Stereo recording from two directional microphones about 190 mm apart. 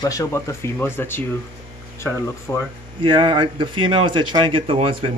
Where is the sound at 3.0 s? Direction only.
25° right (ahead or behind).